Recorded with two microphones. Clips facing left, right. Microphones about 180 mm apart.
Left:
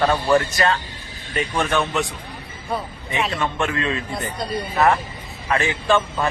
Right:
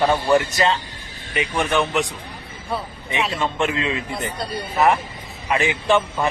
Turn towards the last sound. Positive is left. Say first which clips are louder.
# right 1 dB
turn(degrees=-15)  # may be behind; listen again after turning